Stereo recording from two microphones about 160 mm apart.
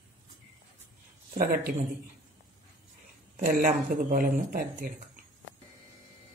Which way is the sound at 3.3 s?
60° right (ahead or behind).